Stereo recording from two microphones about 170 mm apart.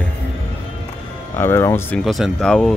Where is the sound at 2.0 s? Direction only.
Centre (ahead or behind).